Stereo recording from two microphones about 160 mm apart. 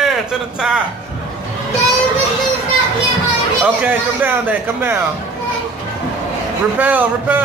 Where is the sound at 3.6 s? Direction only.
10° right (ahead or behind).